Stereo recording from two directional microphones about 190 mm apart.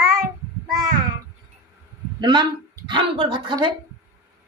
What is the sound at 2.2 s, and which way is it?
Speech, 25° right (ahead or behind).